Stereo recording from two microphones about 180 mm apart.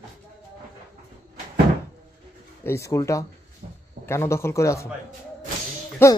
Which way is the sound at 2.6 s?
15° left (ahead or behind).